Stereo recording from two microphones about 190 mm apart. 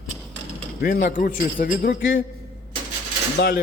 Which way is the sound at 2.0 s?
75° left (ahead or behind).